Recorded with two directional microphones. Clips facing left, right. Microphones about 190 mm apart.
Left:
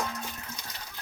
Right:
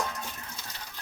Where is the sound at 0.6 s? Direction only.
15° left (ahead or behind).